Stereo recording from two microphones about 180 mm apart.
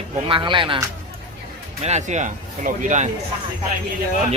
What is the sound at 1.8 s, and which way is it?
Speech, 40° right (ahead or behind).